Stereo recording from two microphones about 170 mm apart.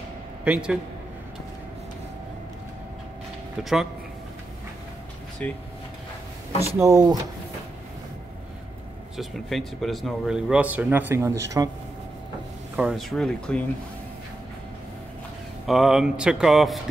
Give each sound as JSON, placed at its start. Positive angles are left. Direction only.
{"t": 0.5, "sound": "speech", "side_deg": -5}
{"t": 5.4, "sound": "speech", "side_deg": 10}
{"t": 6.8, "sound": "speech", "side_deg": -20}
{"t": 9.1, "sound": "speech", "side_deg": 0}
{"t": 12.7, "sound": "speech", "side_deg": -5}
{"t": 15.6, "sound": "speech", "side_deg": 0}